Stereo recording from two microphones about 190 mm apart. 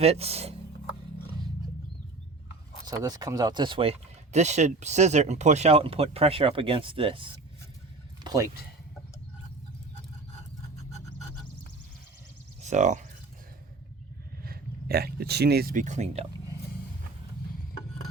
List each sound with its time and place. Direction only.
0.0 s speech: 30° right (ahead or behind)
2.8 s speech: 20° right (ahead or behind)
12.6 s speech: 40° right (ahead or behind)
14.4 s speech: 55° right (ahead or behind); by 16.2 s 40° right (ahead or behind)